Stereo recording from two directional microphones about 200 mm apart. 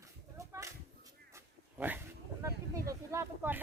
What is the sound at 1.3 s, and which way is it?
Dog, 10° right (ahead or behind).